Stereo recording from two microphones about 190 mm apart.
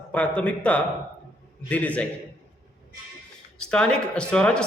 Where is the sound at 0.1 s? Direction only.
5° left (ahead or behind).